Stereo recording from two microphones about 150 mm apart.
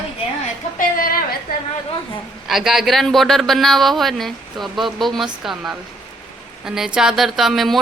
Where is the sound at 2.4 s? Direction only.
Centre (ahead or behind).